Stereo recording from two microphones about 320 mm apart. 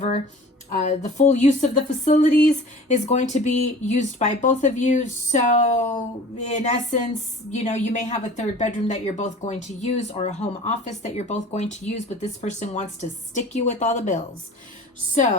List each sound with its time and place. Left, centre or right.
0.9 s a woman's voice: left